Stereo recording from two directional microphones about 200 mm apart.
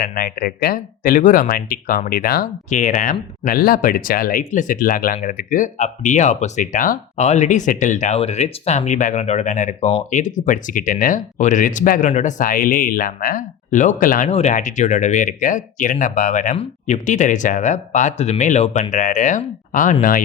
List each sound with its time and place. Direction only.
0.0 s speech: 50° left (ahead or behind)